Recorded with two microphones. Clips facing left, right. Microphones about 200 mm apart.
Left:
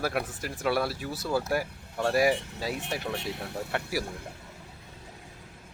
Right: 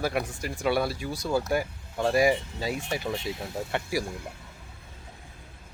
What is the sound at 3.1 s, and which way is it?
Speech, 65° left (ahead or behind).